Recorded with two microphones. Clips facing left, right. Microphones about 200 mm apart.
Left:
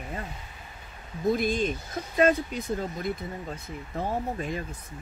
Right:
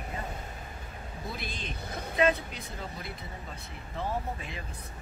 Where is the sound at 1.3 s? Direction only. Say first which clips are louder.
Left 16 dB; 45° left (ahead or behind).